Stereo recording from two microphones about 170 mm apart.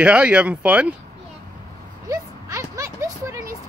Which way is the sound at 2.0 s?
20° right (ahead or behind).